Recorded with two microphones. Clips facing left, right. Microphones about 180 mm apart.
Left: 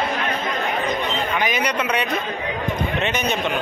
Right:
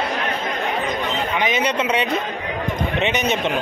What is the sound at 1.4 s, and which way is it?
Speech, 25° right (ahead or behind).